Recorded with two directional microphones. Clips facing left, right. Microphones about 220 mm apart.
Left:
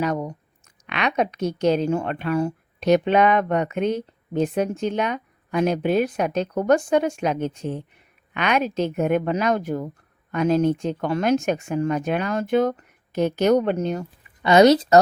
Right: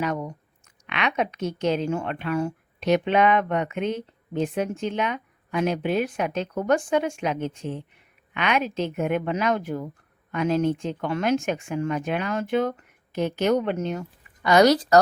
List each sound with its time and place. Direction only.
0.0 s a woman's voice: 35° left (ahead or behind)